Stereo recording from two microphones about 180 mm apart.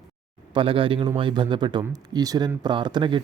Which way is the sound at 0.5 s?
30° right (ahead or behind).